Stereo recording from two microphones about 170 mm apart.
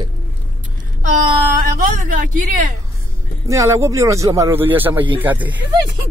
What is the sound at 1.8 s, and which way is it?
Speech, 55° right (ahead or behind).